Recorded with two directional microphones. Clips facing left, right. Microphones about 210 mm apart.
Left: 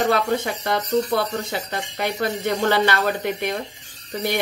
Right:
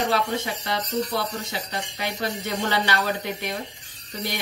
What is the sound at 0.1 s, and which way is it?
Speech, 55° left (ahead or behind).